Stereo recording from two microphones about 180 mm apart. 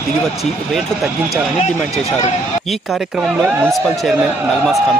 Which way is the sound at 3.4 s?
Centre (ahead or behind).